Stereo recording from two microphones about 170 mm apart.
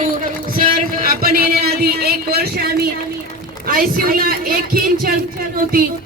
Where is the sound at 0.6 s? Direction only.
55° right (ahead or behind).